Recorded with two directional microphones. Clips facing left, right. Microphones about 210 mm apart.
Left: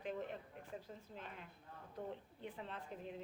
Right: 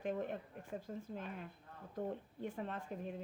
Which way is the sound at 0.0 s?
50° right (ahead or behind).